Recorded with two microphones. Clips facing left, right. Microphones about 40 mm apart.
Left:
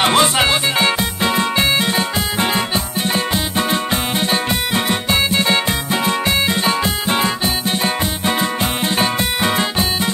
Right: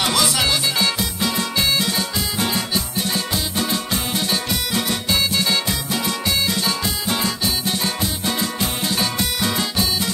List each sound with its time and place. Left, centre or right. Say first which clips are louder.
0.0 s music: left 6 dB; left